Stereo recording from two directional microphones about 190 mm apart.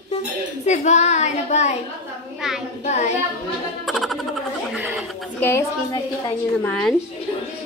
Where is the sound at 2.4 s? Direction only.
Centre (ahead or behind).